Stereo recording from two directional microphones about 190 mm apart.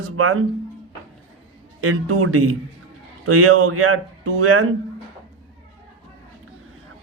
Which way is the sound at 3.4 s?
90° right.